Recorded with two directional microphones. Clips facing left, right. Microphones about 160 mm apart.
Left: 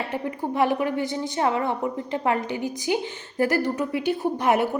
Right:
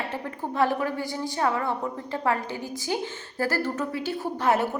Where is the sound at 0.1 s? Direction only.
15° left (ahead or behind).